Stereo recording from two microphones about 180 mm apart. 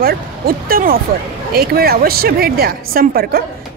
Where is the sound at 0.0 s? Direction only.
55° right (ahead or behind).